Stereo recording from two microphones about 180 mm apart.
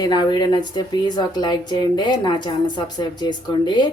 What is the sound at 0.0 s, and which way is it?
A woman's voice, 25° left (ahead or behind).